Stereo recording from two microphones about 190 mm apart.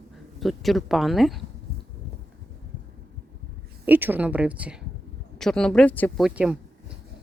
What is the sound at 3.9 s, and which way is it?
Speech, 10° right (ahead or behind).